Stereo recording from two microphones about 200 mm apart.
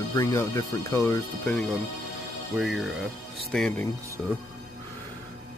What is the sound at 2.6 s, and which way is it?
Speech, centre (ahead or behind).